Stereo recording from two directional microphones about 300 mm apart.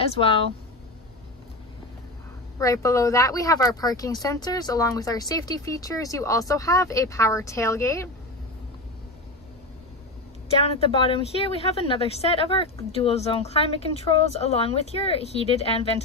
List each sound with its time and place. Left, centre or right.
0.0 s a woman's voice: centre
2.6 s speech: centre
10.5 s a woman's voice: centre